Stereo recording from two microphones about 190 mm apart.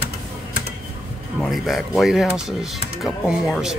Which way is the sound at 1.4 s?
Centre (ahead or behind).